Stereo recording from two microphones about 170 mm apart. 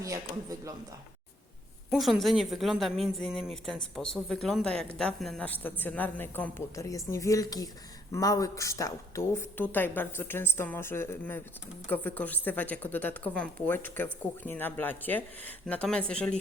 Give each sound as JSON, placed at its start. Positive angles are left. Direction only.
{"t": 0.0, "sound": "speech", "side_deg": -20}
{"t": 1.9, "sound": "a woman's voice", "side_deg": 0}